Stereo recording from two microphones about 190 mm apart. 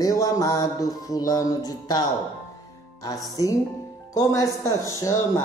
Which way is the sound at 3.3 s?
20° left (ahead or behind).